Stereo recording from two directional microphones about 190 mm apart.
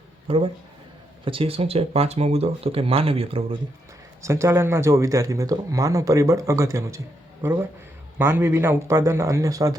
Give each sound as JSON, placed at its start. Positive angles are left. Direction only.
{"t": 0.3, "sound": "speech", "side_deg": -30}
{"t": 4.2, "sound": "speech", "side_deg": -15}
{"t": 8.2, "sound": "speech", "side_deg": -10}